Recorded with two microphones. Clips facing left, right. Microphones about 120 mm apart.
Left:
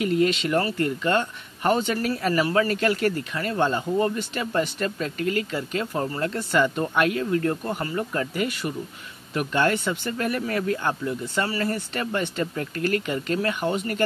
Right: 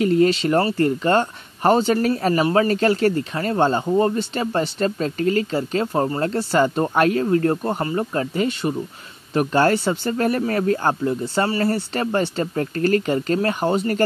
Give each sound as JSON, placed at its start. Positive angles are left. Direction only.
{"t": 0.0, "sound": "speech", "side_deg": -35}